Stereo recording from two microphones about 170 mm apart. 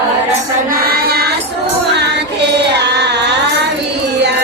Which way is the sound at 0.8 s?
65° right (ahead or behind).